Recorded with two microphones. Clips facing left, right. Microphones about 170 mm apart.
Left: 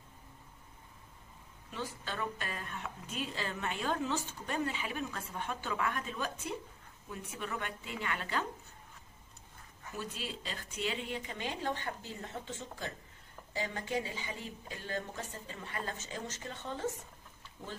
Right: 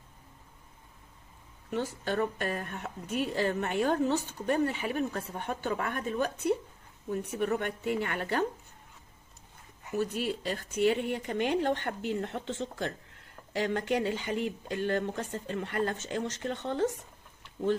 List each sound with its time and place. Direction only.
1.7 s a woman's voice: 60° right (ahead or behind)
4.1 s speech: 40° right (ahead or behind)
4.6 s a woman's voice: 55° right (ahead or behind)
5.1 s a woman's voice: 40° right (ahead or behind); by 8.5 s 55° right (ahead or behind)
9.9 s a woman's voice: 60° right (ahead or behind)
10.6 s a woman's voice: 45° right (ahead or behind); by 16.8 s 65° right (ahead or behind)